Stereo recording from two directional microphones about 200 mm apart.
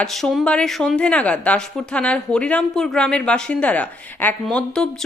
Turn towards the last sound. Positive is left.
turn(degrees=5)  # may be behind; listen again after turning